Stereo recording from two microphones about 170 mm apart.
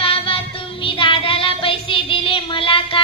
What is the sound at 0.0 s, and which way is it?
Child singing, 30° left (ahead or behind).